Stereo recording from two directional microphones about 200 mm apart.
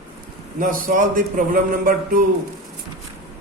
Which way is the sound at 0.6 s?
40° right (ahead or behind).